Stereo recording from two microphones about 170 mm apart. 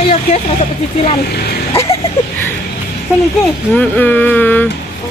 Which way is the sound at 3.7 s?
10° left (ahead or behind).